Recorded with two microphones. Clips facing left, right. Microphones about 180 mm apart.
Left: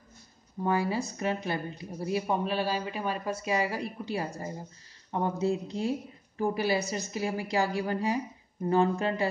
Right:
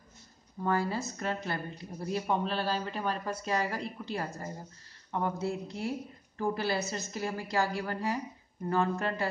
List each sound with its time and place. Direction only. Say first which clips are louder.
0.6 s speech: left 2 dB; 15° left (ahead or behind)